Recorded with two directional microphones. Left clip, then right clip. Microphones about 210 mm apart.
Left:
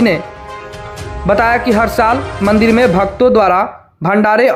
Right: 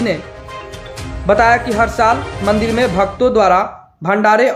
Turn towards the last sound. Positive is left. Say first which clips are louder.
# left 1 dB
turn(degrees=40)  # may be behind; listen again after turning